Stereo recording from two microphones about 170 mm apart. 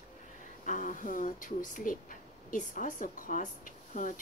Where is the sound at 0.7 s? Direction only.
50° left (ahead or behind).